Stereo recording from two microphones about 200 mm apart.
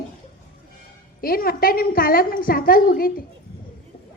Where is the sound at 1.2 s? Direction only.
45° left (ahead or behind).